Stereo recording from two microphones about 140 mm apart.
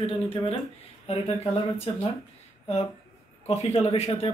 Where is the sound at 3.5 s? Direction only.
50° left (ahead or behind).